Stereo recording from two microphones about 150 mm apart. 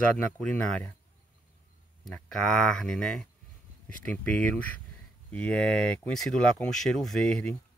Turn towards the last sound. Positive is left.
turn(degrees=5)  # may be behind; listen again after turning